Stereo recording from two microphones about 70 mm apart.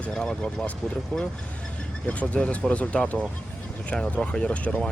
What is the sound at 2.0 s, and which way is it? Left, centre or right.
Speech, centre.